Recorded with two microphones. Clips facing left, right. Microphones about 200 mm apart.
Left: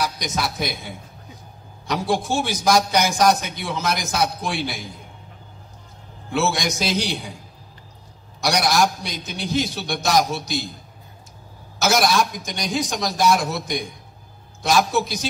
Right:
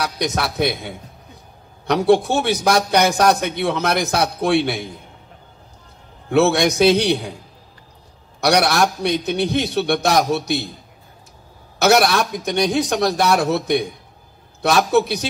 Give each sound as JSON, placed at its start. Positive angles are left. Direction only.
{"t": 0.0, "sound": "a man's voice", "side_deg": -65}
{"t": 6.3, "sound": "a man's voice", "side_deg": -60}
{"t": 8.4, "sound": "a man's voice", "side_deg": -60}
{"t": 11.8, "sound": "a man's voice", "side_deg": -60}